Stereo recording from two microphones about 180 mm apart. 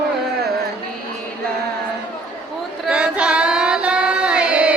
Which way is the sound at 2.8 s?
5° right (ahead or behind).